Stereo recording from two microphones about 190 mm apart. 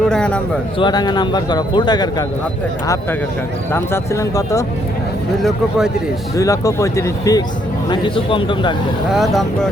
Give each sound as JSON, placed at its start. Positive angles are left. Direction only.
{"t": 0.0, "sound": "a man's voice", "side_deg": 5}
{"t": 0.8, "sound": "a man's voice", "side_deg": 20}
{"t": 5.4, "sound": "speech", "side_deg": 0}
{"t": 6.3, "sound": "a man's voice", "side_deg": 15}
{"t": 9.1, "sound": "speech", "side_deg": 0}